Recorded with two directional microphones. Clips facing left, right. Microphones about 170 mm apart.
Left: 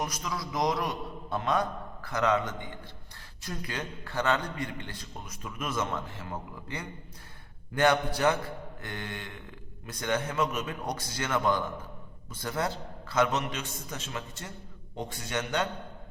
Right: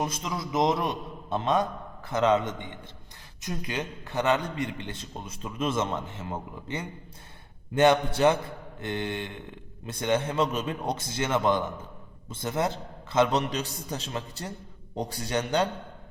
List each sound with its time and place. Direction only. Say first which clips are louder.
0.0 s a man's voice: right 3 dB; 25° right (ahead or behind)